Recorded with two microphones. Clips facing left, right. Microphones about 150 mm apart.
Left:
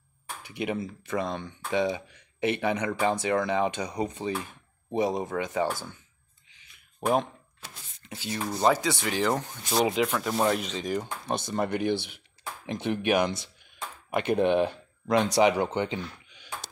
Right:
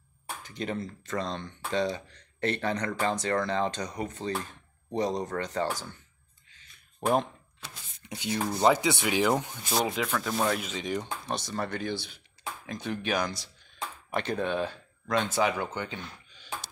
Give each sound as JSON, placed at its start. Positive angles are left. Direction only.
{"t": 0.5, "sound": "speech", "side_deg": 10}
{"t": 6.5, "sound": "a sound", "side_deg": 15}
{"t": 8.0, "sound": "speech", "side_deg": -15}
{"t": 9.7, "sound": "speech", "side_deg": 5}
{"t": 10.6, "sound": "speech", "side_deg": 0}
{"t": 11.5, "sound": "speech", "side_deg": 20}
{"t": 13.7, "sound": "a sound", "side_deg": 10}
{"t": 15.4, "sound": "speech", "side_deg": 25}